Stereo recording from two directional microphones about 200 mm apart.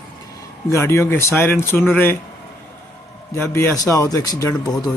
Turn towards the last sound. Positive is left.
turn(degrees=20)  # may be behind; listen again after turning